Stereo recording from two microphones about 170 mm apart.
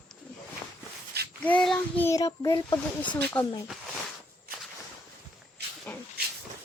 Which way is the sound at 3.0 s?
10° left (ahead or behind).